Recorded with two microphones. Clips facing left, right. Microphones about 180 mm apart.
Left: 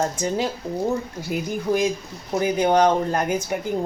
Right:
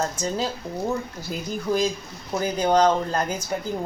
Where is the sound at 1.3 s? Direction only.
15° left (ahead or behind).